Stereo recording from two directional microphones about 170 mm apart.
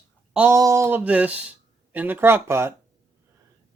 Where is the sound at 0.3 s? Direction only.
15° right (ahead or behind).